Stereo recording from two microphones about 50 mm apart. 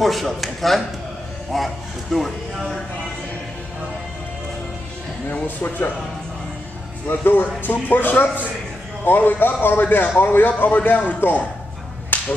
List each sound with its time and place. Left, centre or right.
0.0 s speech: centre
5.3 s speech: left
7.1 s speech: left
11.1 s speech: left
12.1 s whip: left